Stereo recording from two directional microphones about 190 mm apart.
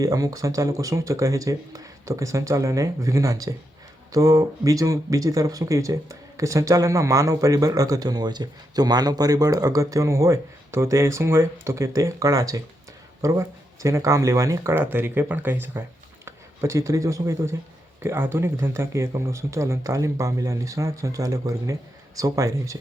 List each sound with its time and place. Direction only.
0.0 s speech: 20° right (ahead or behind)